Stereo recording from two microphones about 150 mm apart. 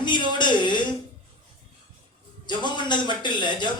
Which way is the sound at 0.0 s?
30° left (ahead or behind).